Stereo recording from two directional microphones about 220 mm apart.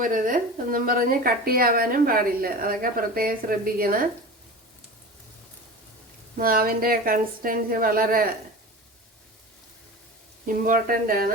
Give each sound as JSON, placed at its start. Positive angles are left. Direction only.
{"t": 0.0, "sound": "a woman's voice", "side_deg": -40}
{"t": 6.3, "sound": "a woman's voice", "side_deg": -40}
{"t": 10.4, "sound": "a woman's voice", "side_deg": -40}